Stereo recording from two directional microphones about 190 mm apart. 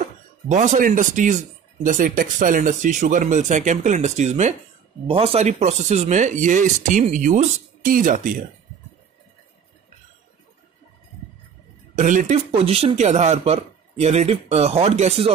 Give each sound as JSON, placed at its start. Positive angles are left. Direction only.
{"t": 0.0, "sound": "speech", "side_deg": -40}
{"t": 11.9, "sound": "speech", "side_deg": -40}